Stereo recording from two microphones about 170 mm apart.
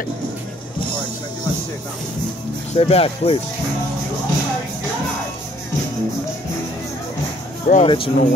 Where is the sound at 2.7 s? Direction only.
35° left (ahead or behind).